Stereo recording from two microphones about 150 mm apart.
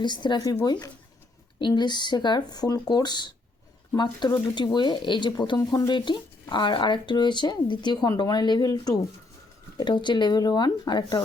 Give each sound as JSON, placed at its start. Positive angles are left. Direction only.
{"t": 0.0, "sound": "speech", "side_deg": 30}